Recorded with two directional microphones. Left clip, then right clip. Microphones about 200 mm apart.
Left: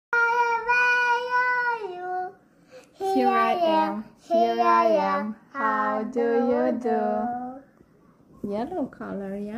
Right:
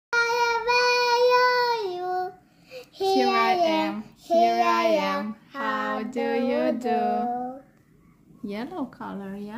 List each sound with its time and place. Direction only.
0.1 s child singing: 25° right (ahead or behind)
3.1 s child singing: 10° right (ahead or behind)
6.1 s music: 20° right (ahead or behind)
8.5 s speech: 15° right (ahead or behind)
8.9 s speech: 5° left (ahead or behind)